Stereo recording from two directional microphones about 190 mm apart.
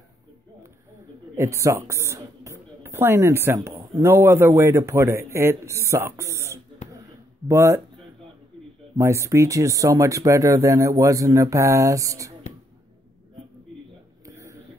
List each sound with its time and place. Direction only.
1.3 s speech: 15° right (ahead or behind)
8.9 s speech: 15° right (ahead or behind)
14.2 s a sound: 15° right (ahead or behind)